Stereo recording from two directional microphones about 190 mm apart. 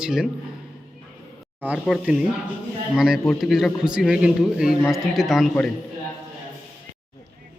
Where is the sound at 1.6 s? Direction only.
5° right (ahead or behind).